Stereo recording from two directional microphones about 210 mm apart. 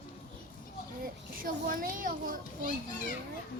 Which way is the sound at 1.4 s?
40° right (ahead or behind).